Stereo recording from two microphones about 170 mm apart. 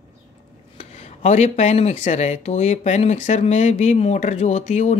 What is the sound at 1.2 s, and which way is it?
Speech, 40° left (ahead or behind).